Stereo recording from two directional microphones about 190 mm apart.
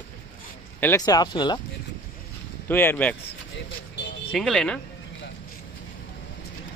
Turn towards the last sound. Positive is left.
turn(degrees=5)  # may be behind; listen again after turning